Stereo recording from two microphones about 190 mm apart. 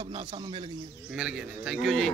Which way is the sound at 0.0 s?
30° right (ahead or behind).